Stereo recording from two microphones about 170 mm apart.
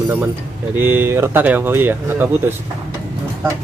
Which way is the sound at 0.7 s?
10° right (ahead or behind).